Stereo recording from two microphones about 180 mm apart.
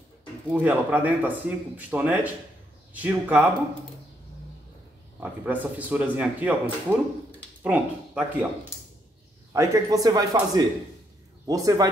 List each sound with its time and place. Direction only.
0.5 s speech: 10° right (ahead or behind)
5.2 s speech: 10° right (ahead or behind)
9.5 s speech: 15° right (ahead or behind)